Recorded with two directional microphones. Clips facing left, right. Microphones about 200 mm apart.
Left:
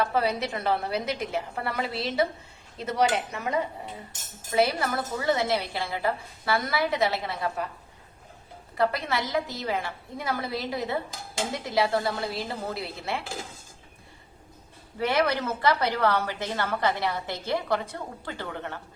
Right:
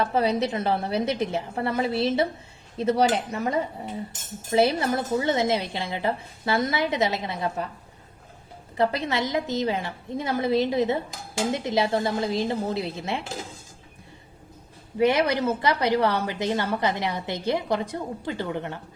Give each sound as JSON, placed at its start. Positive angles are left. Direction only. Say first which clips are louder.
{"t": 0.1, "sound": "a woman's voice", "louder": "right 4 dB", "side_deg": -20}
{"t": 2.7, "sound": "cutlery", "louder": "right 4 dB", "side_deg": -30}
{"t": 4.5, "sound": "a woman's voice", "louder": "right 3 dB", "side_deg": -25}
{"t": 8.8, "sound": "a woman's voice", "louder": "right 2 dB", "side_deg": -20}
{"t": 14.9, "sound": "a woman's voice", "louder": "right 4 dB", "side_deg": -15}